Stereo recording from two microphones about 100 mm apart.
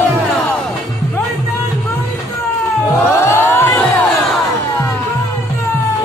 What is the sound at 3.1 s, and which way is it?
Crowd, 25° left (ahead or behind).